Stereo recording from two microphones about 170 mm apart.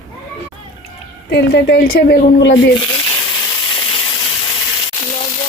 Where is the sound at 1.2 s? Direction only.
75° left (ahead or behind).